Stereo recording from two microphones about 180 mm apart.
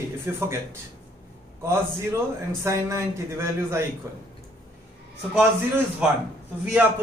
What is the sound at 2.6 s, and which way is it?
A man's voice, 15° right (ahead or behind).